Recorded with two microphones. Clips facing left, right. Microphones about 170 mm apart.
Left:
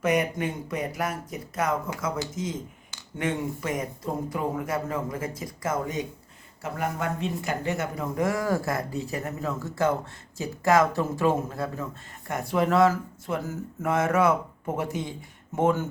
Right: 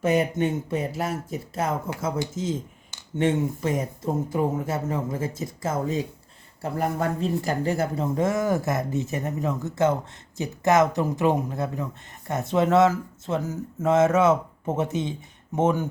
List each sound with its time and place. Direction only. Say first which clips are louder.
0.0 s speech: right 3 dB; 25° right (ahead or behind)